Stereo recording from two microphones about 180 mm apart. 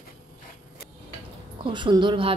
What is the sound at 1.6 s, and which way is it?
Speech, 25° right (ahead or behind).